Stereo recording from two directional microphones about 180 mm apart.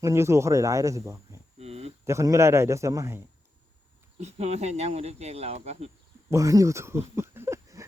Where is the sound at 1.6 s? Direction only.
35° right (ahead or behind).